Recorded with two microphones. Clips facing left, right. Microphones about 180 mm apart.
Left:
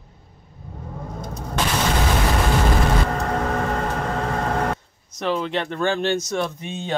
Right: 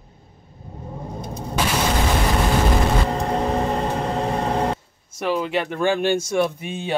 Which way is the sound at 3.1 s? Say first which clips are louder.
Right 2 dB; 20° right (ahead or behind).